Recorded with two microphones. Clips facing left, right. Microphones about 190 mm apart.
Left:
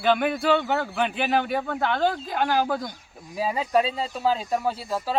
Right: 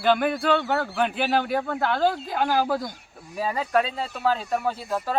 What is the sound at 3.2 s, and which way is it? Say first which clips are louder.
Speech: left 1 dB; 10° left (ahead or behind).